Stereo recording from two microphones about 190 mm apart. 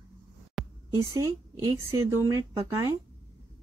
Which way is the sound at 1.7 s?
15° right (ahead or behind).